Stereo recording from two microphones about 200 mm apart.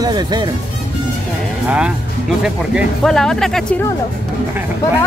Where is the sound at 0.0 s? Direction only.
20° right (ahead or behind).